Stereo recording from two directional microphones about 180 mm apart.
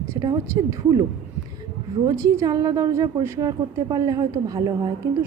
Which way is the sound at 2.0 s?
20° right (ahead or behind).